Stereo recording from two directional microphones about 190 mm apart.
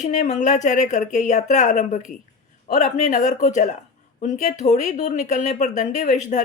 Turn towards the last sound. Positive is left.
turn(degrees=40)  # may be behind; listen again after turning